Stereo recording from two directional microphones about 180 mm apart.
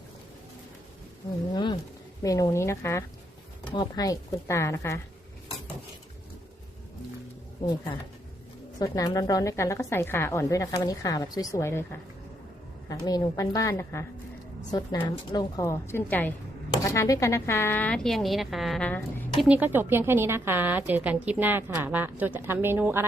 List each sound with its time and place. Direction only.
1.5 s a woman's voice: 25° left (ahead or behind)
8.8 s a woman's voice: 20° left (ahead or behind)
19.5 s a woman's voice: 10° right (ahead or behind)